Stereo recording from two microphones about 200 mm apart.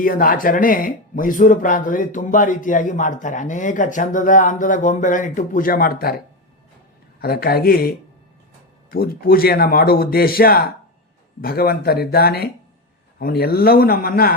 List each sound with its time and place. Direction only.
0.0 s speech: 45° left (ahead or behind)
7.2 s a man's voice: 50° left (ahead or behind)